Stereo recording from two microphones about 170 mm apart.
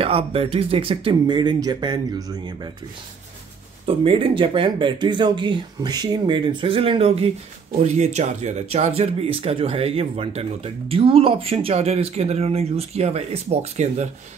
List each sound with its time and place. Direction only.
0.0 s speech: 35° right (ahead or behind)
3.8 s speech: 35° right (ahead or behind)